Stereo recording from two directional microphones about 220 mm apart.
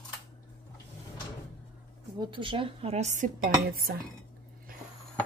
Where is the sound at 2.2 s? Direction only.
20° right (ahead or behind); by 3.7 s 35° right (ahead or behind).